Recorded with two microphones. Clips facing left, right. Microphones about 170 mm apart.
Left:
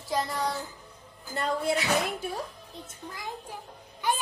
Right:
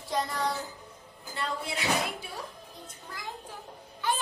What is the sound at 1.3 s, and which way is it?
Speech, 45° left (ahead or behind).